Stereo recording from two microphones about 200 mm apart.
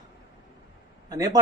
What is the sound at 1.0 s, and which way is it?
Speech, 20° right (ahead or behind).